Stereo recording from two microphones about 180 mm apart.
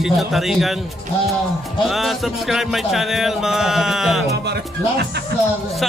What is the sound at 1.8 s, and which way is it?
Speech, centre (ahead or behind).